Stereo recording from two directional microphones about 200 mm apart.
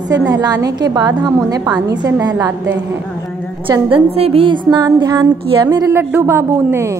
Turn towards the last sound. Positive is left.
turn(degrees=-15)  # may be behind; listen again after turning